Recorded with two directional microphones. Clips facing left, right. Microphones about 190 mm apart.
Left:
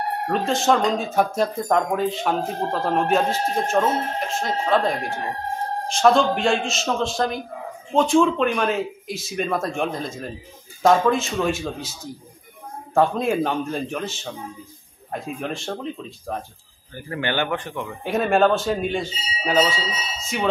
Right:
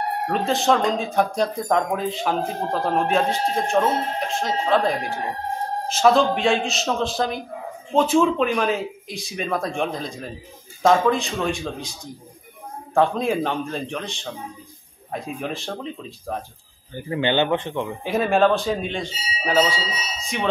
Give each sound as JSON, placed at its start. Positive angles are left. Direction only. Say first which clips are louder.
{"t": 0.3, "sound": "speech", "louder": "even", "side_deg": 0}
{"t": 16.9, "sound": "speech", "louder": "right 4 dB", "side_deg": -20}
{"t": 18.0, "sound": "speech", "louder": "even", "side_deg": 0}
{"t": 20.2, "sound": "alarm", "louder": "left 1 dB", "side_deg": 5}